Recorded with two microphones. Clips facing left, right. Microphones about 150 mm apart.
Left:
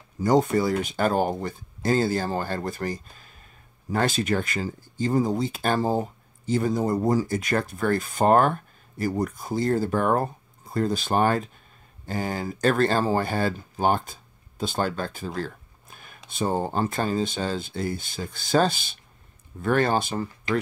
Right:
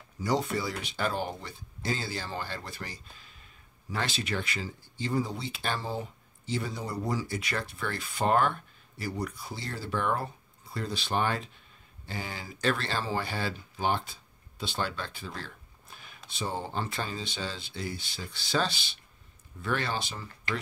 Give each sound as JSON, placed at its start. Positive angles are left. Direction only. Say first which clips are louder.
{"t": 0.2, "sound": "speech", "louder": "left 9 dB", "side_deg": 50}